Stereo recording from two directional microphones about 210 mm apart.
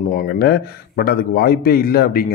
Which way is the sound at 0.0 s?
40° left (ahead or behind).